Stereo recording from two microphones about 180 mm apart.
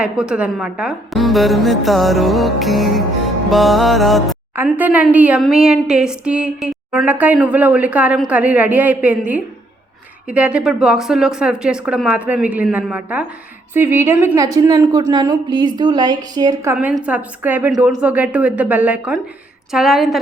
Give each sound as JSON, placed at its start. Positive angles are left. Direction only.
{"t": 0.0, "sound": "a woman's voice", "side_deg": -5}
{"t": 4.5, "sound": "a woman's voice", "side_deg": -10}
{"t": 16.7, "sound": "a woman's voice", "side_deg": -5}